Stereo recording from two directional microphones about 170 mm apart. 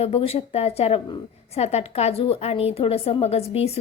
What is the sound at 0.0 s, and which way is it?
A woman's voice, 35° left (ahead or behind).